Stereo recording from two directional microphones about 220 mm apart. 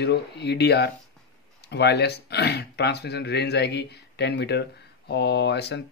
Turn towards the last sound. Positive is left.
turn(degrees=50)  # may be behind; listen again after turning